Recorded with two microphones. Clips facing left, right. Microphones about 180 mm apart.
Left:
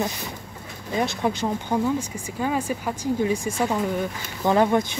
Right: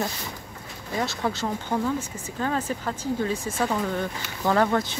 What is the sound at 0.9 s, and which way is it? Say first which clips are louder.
Speech: left 3 dB; 15° left (ahead or behind).